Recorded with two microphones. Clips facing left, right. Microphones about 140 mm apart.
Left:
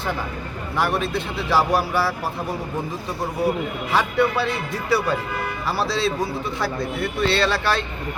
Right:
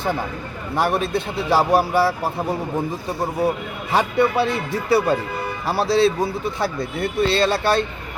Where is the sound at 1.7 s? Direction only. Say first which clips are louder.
Right 4 dB; 50° right (ahead or behind).